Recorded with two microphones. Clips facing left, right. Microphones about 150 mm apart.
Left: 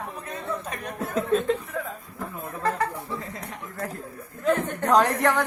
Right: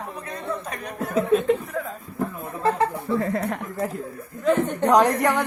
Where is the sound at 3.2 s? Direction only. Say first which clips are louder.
Right 12 dB; 60° right (ahead or behind).